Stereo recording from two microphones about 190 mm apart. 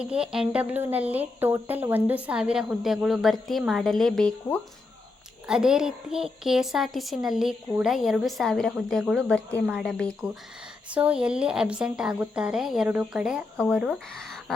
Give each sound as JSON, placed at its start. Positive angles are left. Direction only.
{"t": 0.0, "sound": "speech", "side_deg": -5}